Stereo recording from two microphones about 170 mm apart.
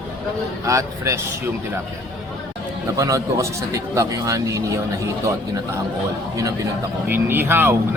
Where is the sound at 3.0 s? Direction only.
20° right (ahead or behind).